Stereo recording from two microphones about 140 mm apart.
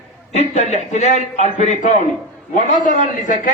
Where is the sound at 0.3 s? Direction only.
55° left (ahead or behind).